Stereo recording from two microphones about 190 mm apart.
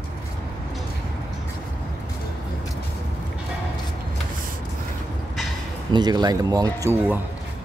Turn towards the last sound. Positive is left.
turn(degrees=-15)  # may be behind; listen again after turning